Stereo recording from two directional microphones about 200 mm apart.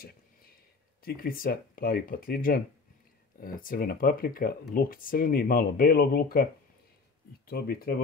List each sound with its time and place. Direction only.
1.0 s speech: 45° left (ahead or behind)